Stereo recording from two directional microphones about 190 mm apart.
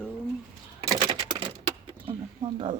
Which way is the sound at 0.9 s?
25° right (ahead or behind).